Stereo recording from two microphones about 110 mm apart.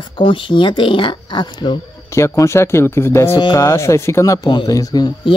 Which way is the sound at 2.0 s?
25° left (ahead or behind).